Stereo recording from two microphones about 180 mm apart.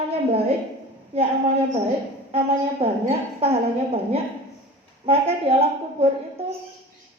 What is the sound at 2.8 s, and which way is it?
Speech, 35° right (ahead or behind).